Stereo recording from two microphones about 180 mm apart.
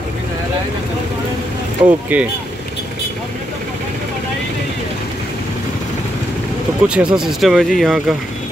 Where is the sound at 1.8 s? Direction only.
10° right (ahead or behind).